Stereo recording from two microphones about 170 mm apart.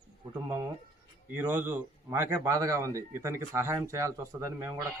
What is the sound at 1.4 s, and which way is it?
Speech, 10° right (ahead or behind).